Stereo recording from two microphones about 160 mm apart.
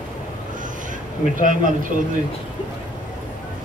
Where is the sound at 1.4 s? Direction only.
55° right (ahead or behind).